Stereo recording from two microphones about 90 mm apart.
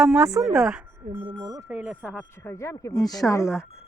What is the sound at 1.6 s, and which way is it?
Speech, 15° right (ahead or behind).